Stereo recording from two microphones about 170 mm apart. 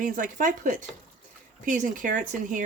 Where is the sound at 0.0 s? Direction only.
50° right (ahead or behind).